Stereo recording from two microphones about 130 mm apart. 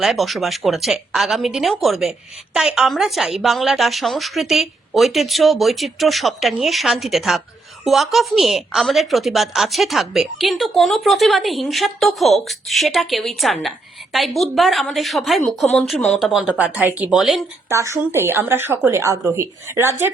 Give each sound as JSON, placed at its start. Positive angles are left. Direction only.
{"t": 0.0, "sound": "a woman's voice", "side_deg": 0}
{"t": 17.7, "sound": "a woman's voice", "side_deg": -20}